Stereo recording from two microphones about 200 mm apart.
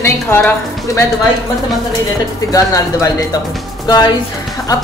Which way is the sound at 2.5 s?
15° left (ahead or behind).